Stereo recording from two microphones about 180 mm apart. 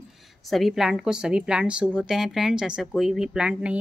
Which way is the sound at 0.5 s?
Centre (ahead or behind).